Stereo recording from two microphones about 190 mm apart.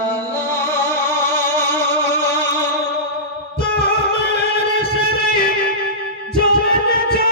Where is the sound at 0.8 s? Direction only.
10° left (ahead or behind).